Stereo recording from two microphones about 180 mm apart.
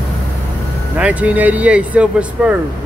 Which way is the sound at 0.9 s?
5° right (ahead or behind).